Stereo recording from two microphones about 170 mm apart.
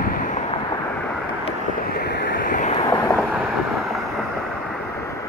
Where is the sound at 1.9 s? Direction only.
75° left (ahead or behind); by 2.7 s 55° left (ahead or behind).